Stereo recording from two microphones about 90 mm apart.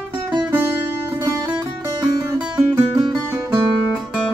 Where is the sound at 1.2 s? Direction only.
45° right (ahead or behind).